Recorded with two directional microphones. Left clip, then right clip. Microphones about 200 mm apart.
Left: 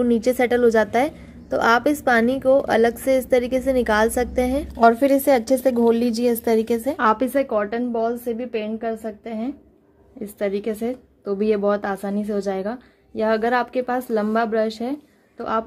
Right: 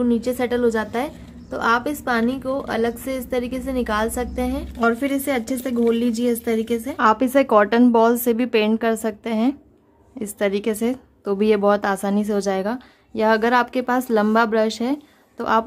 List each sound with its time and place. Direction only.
0.0 s a woman's voice: 15° left (ahead or behind)
7.0 s a woman's voice: centre (ahead or behind)
7.2 s a woman's voice: 10° right (ahead or behind)
7.5 s a woman's voice: 20° right (ahead or behind)